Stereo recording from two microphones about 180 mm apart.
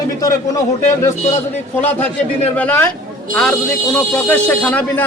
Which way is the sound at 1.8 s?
10° left (ahead or behind).